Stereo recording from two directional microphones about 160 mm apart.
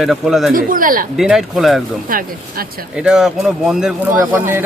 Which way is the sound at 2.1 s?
65° right (ahead or behind).